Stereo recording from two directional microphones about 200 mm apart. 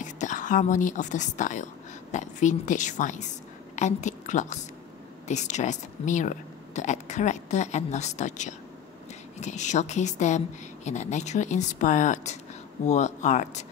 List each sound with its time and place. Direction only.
0.0 s a woman's voice: 40° left (ahead or behind)